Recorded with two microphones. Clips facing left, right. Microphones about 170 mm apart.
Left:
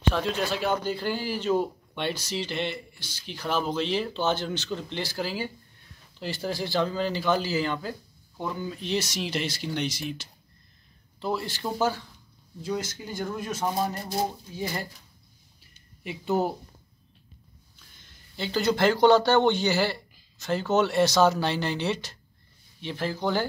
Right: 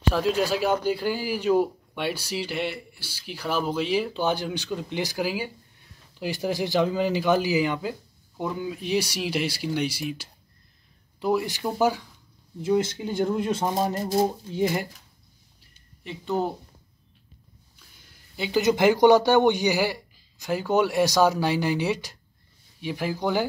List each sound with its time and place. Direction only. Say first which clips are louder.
0.1 s speech: right 4 dB; 5° right (ahead or behind)
12.6 s speech: right 8 dB; 25° right (ahead or behind)
16.0 s speech: left 1 dB; 10° left (ahead or behind)
17.9 s speech: right 2 dB; 5° right (ahead or behind)